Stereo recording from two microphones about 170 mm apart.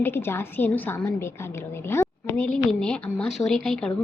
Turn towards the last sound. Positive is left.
turn(degrees=5)  # may be behind; listen again after turning